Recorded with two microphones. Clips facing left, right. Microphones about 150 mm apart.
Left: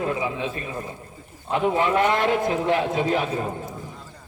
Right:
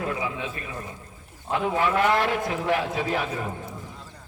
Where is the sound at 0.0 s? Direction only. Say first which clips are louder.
Left 4 dB; 25° left (ahead or behind).